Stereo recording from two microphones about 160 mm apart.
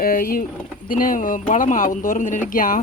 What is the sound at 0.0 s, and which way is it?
Speech, 65° left (ahead or behind).